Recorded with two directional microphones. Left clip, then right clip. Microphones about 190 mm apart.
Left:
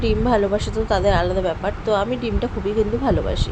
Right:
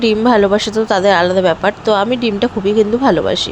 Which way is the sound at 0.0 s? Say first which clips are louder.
Right 8 dB; 20° right (ahead or behind).